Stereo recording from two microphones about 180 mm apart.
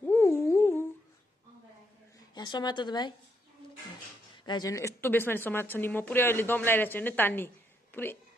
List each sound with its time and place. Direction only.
0.0 s a sound: 10° left (ahead or behind)
2.1 s a woman's voice: 25° left (ahead or behind)
4.5 s speech: 20° left (ahead or behind)